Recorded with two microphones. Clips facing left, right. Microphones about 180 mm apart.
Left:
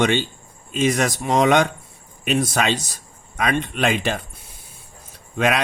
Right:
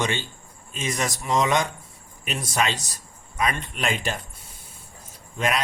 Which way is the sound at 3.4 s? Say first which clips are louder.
Left 6 dB; 85° left.